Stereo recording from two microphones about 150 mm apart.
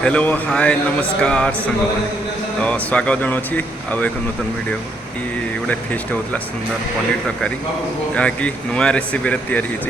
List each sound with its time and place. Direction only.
0.0 s speech: 10° left (ahead or behind)
5.6 s speech: 10° left (ahead or behind)
8.1 s speech: 10° left (ahead or behind)